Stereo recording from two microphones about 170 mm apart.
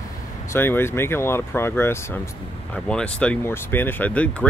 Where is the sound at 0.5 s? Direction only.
15° left (ahead or behind).